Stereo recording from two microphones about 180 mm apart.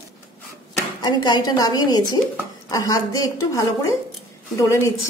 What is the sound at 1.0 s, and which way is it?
A woman's voice, 20° left (ahead or behind).